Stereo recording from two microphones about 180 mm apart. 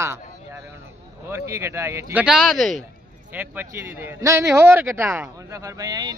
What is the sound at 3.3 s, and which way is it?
A man's voice, 10° right (ahead or behind).